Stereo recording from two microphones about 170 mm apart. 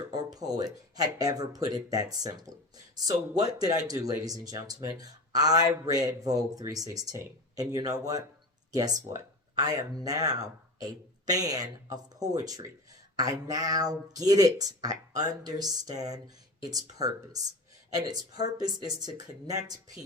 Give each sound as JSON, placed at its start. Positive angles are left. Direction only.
{"t": 0.1, "sound": "speech", "side_deg": -25}